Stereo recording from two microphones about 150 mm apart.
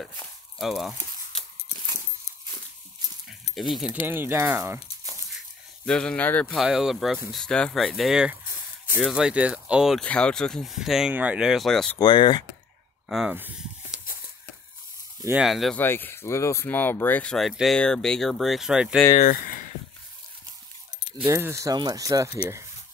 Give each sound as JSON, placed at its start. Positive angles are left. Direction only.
{"t": 0.6, "sound": "speech", "side_deg": 0}
{"t": 3.5, "sound": "speech", "side_deg": 0}
{"t": 4.1, "sound": "speech", "side_deg": -15}
{"t": 5.9, "sound": "speech", "side_deg": 5}
{"t": 6.6, "sound": "speech", "side_deg": -5}
{"t": 10.0, "sound": "speech", "side_deg": 5}
{"t": 12.0, "sound": "speech", "side_deg": 30}
{"t": 13.3, "sound": "a sound", "side_deg": -10}
{"t": 15.4, "sound": "speech", "side_deg": 0}
{"t": 15.8, "sound": "speech", "side_deg": 15}
{"t": 19.1, "sound": "speech", "side_deg": 65}
{"t": 21.3, "sound": "speech", "side_deg": -20}